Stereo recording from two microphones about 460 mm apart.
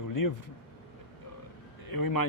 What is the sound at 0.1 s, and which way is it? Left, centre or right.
Speech, left.